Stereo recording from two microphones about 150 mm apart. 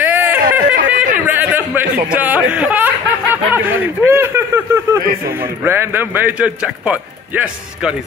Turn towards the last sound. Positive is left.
turn(degrees=-10)  # may be behind; listen again after turning